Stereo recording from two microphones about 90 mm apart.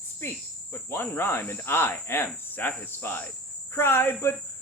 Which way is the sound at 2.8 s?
25° left (ahead or behind).